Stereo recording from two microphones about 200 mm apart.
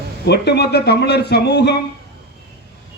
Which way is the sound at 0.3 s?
55° left (ahead or behind).